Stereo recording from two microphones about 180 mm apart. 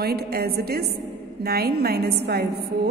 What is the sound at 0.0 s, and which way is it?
A woman's voice, 60° right (ahead or behind).